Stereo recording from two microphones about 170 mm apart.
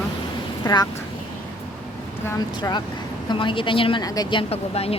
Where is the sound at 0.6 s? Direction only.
25° left (ahead or behind).